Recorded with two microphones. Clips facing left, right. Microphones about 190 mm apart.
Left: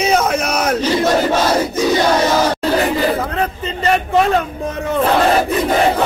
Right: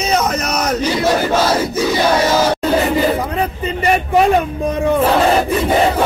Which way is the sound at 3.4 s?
10° right (ahead or behind).